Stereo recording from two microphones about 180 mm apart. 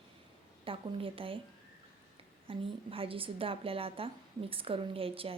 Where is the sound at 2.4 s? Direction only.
30° right (ahead or behind).